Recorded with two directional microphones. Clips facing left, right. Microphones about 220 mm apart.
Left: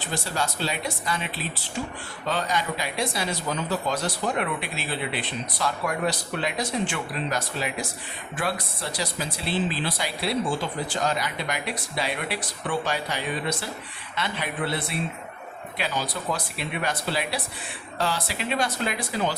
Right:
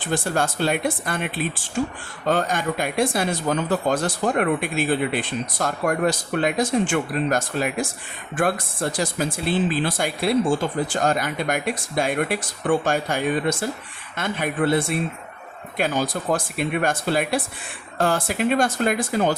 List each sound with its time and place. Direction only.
0.0 s speech: 50° right (ahead or behind)